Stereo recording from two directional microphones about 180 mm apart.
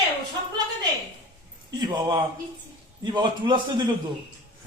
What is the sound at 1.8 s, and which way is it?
A man's voice, 25° right (ahead or behind).